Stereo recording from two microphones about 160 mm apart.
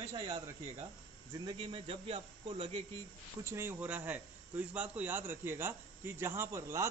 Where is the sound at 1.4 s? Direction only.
35° right (ahead or behind).